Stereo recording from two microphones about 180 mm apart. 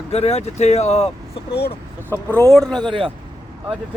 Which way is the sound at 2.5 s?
Centre (ahead or behind).